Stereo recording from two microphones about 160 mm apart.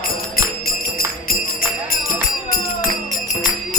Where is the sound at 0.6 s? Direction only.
65° left (ahead or behind).